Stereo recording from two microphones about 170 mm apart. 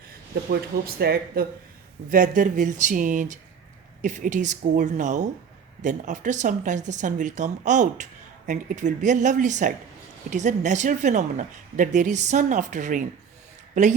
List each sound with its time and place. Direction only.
0.5 s speech: 70° right (ahead or behind)
2.0 s speech: 50° right (ahead or behind)